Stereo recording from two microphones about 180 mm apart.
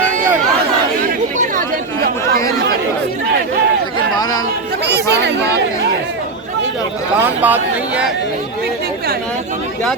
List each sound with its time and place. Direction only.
1.4 s chatter: 50° right (ahead or behind)
5.1 s chatter: 70° right (ahead or behind)
7.2 s speech: 10° right (ahead or behind)